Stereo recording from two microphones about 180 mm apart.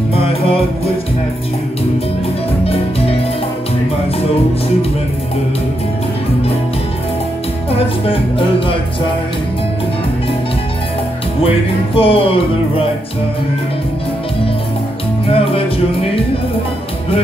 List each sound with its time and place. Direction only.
0.1 s music: 35° left (ahead or behind)
2.6 s music: 35° left (ahead or behind)
7.7 s speech: 30° left (ahead or behind)
11.4 s music: 30° left (ahead or behind)
15.2 s music: 30° left (ahead or behind)